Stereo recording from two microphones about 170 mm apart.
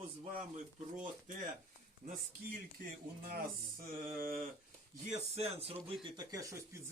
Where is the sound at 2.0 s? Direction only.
60° right (ahead or behind).